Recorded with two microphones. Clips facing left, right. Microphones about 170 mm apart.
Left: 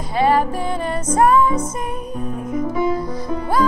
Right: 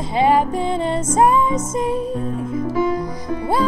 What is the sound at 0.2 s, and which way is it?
Music, 20° right (ahead or behind).